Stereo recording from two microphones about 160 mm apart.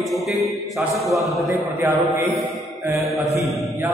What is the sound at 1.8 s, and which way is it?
Mantra, 15° right (ahead or behind).